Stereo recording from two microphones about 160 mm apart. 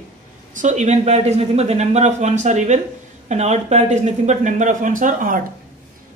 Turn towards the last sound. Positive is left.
turn(degrees=-55)  # may be behind; listen again after turning